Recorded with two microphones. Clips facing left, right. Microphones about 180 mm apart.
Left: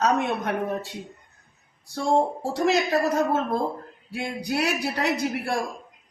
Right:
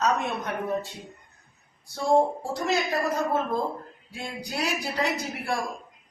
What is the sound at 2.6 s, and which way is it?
Speech, 75° left (ahead or behind).